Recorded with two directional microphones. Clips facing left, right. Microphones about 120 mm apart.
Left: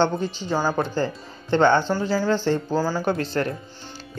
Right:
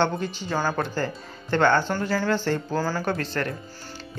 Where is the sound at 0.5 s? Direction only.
10° left (ahead or behind).